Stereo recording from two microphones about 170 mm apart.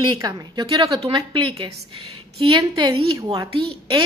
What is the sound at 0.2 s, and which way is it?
A woman's voice, 20° right (ahead or behind).